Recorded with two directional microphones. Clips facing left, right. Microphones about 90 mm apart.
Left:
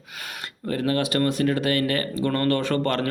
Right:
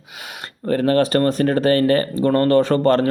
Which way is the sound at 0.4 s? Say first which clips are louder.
Right 7 dB; 40° right (ahead or behind).